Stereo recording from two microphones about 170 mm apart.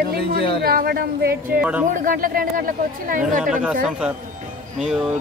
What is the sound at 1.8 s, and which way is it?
Speech, 55° right (ahead or behind).